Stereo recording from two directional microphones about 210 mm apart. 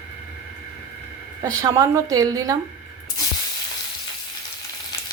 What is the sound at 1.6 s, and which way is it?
Speech, 15° right (ahead or behind).